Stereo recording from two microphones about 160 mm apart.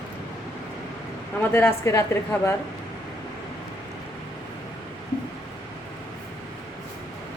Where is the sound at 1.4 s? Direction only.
15° left (ahead or behind).